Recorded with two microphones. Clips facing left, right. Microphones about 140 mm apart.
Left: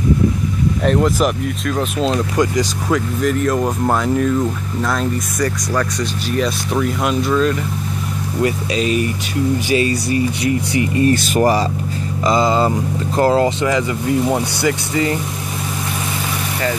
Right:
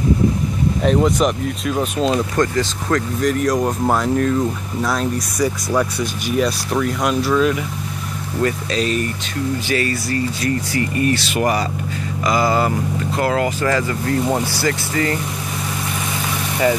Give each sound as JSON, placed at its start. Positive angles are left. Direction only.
{"t": 0.8, "sound": "speech", "side_deg": 0}
{"t": 2.3, "sound": "speech", "side_deg": 10}
{"t": 5.7, "sound": "speech", "side_deg": -10}
{"t": 8.4, "sound": "speech", "side_deg": 10}
{"t": 9.7, "sound": "speech", "side_deg": 20}
{"t": 11.1, "sound": "speech", "side_deg": 35}
{"t": 12.3, "sound": "speech", "side_deg": 25}
{"t": 13.1, "sound": "speech", "side_deg": 35}
{"t": 13.7, "sound": "speech", "side_deg": 15}